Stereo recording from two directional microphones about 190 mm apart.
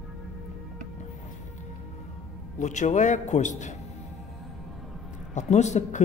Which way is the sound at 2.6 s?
40° left (ahead or behind).